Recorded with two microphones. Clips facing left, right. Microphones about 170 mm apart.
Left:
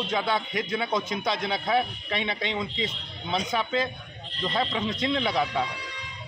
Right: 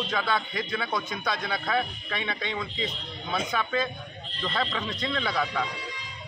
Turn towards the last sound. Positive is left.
turn(degrees=20)  # may be behind; listen again after turning